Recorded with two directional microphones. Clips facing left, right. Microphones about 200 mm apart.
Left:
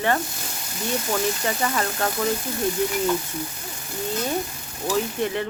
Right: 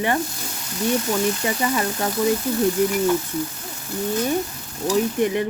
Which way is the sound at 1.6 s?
15° right (ahead or behind).